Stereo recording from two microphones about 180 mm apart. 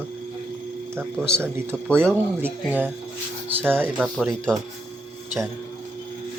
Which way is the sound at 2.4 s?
10° right (ahead or behind).